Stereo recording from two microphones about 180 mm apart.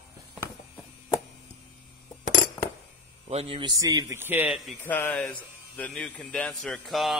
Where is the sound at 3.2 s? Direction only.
35° right (ahead or behind).